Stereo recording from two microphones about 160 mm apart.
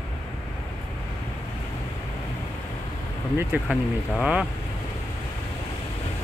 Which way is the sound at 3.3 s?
10° right (ahead or behind).